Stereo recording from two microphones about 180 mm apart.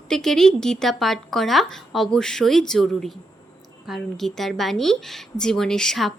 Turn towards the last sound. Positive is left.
turn(degrees=0)  # may be behind; listen again after turning